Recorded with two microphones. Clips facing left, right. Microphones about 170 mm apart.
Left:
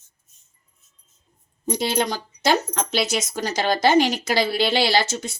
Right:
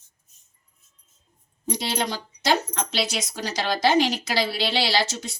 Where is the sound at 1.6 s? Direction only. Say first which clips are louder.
Left 4 dB; 50° left (ahead or behind).